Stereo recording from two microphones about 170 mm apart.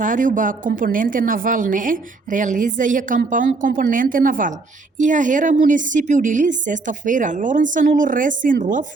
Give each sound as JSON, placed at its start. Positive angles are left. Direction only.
{"t": 0.0, "sound": "a woman's voice", "side_deg": -50}